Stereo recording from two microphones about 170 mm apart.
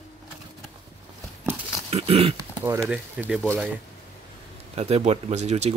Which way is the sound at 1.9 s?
35° right (ahead or behind).